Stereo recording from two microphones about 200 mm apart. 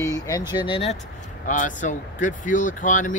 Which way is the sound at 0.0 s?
15° left (ahead or behind).